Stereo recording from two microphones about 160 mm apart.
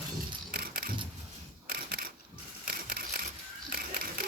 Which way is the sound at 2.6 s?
70° right (ahead or behind).